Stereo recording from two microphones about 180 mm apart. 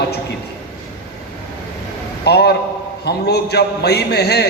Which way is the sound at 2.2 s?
65° left (ahead or behind).